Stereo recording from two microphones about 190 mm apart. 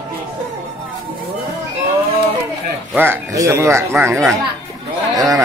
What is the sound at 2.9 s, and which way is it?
Speech, 10° right (ahead or behind).